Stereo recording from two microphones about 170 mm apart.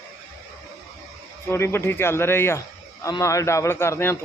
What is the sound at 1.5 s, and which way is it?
Speech, 15° left (ahead or behind).